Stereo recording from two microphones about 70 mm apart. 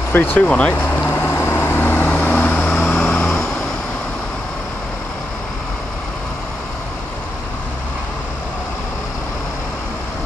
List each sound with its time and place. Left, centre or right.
0.1 s speech: left
0.7 s vehicle: left